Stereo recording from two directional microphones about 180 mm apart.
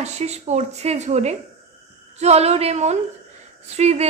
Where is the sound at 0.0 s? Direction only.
40° right (ahead or behind).